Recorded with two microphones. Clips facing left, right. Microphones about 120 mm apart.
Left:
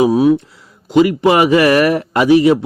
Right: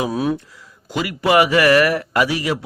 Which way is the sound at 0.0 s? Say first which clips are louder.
Left 10 dB; 20° left (ahead or behind).